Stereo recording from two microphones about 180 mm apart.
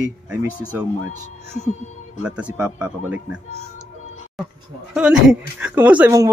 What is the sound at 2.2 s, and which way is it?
Speech, 5° right (ahead or behind).